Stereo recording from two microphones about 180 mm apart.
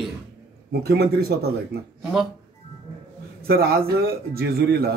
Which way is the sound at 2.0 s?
Centre (ahead or behind).